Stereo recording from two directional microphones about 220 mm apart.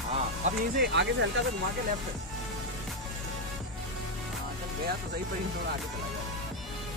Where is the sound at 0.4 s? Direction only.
30° right (ahead or behind).